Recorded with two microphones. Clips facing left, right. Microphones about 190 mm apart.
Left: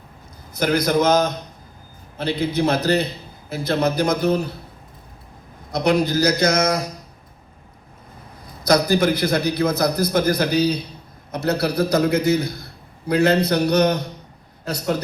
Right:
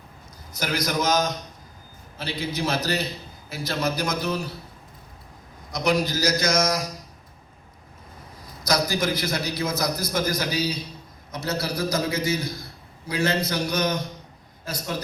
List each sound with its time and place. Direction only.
0.6 s a man's voice: 55° left (ahead or behind)
5.7 s a man's voice: 60° left (ahead or behind)
8.6 s a man's voice: 60° left (ahead or behind)